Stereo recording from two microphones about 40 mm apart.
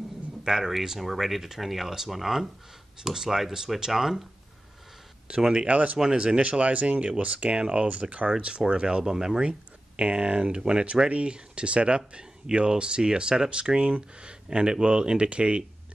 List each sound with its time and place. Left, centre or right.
0.5 s speech: centre
5.4 s speech: centre
5.7 s speech: right
5.9 s speech: centre
6.6 s speech: right
8.3 s speech: right
9.0 s speech: centre
9.4 s speech: right